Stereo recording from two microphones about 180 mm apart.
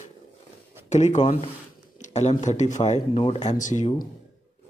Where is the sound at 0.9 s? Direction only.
40° left (ahead or behind).